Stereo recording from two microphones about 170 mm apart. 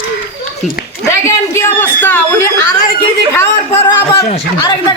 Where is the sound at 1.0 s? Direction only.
15° left (ahead or behind).